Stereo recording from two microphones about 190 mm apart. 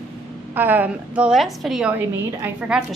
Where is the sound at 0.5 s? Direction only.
10° right (ahead or behind).